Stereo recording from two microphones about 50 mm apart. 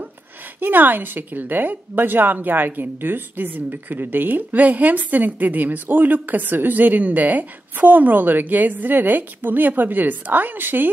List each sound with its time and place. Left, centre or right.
0.6 s a woman's voice: right